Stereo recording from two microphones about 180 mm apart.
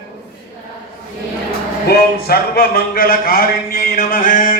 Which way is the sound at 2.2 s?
55° left (ahead or behind).